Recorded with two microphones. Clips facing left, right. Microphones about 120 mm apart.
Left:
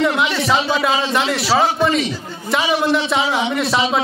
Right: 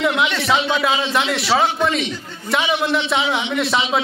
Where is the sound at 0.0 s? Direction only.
Centre (ahead or behind).